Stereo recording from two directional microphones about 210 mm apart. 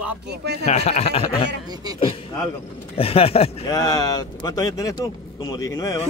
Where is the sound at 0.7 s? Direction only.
30° left (ahead or behind).